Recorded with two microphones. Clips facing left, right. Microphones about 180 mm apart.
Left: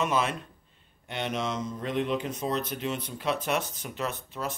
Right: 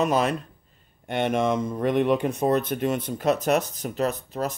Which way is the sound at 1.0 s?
55° right (ahead or behind).